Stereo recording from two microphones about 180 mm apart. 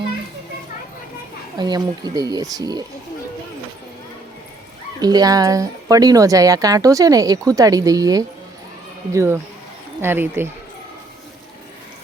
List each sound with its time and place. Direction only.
1.5 s speech: 25° right (ahead or behind)
4.9 s speech: 20° right (ahead or behind)